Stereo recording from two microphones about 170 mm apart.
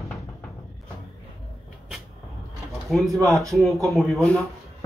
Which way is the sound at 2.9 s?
5° left (ahead or behind).